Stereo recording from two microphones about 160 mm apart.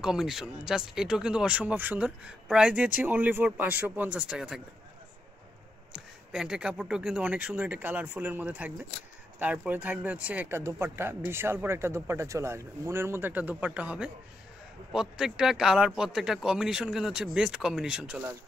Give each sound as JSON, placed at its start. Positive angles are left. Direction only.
{"t": 0.0, "sound": "speech", "side_deg": -5}
{"t": 5.9, "sound": "a man's voice", "side_deg": -5}